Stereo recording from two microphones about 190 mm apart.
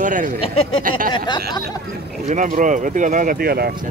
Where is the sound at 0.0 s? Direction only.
45° right (ahead or behind).